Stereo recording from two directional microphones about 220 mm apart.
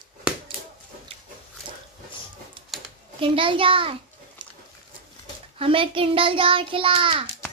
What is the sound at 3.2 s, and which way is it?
Child singing, 25° right (ahead or behind).